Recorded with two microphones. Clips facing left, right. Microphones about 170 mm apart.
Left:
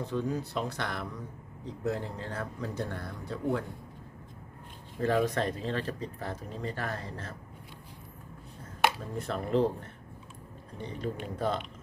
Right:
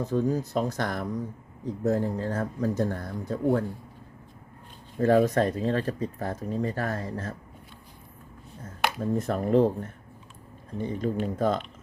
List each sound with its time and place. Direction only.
0.0 s speech: 45° right (ahead or behind)
4.9 s speech: 45° right (ahead or behind)
9.0 s speech: 45° right (ahead or behind)